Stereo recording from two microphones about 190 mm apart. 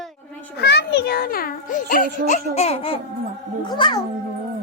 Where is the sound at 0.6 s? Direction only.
60° left (ahead or behind); by 4.0 s 25° left (ahead or behind).